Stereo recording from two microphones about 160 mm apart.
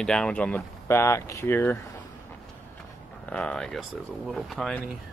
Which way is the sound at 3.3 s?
5° left (ahead or behind).